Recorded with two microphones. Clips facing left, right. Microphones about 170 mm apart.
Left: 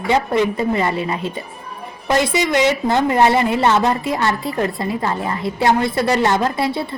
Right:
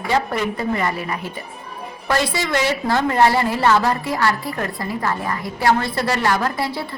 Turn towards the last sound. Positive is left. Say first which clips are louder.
# left 4 dB
turn(degrees=25)  # may be behind; listen again after turning